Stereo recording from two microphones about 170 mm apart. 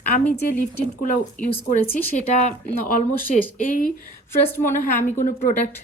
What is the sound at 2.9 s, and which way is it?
Speech, 55° left (ahead or behind).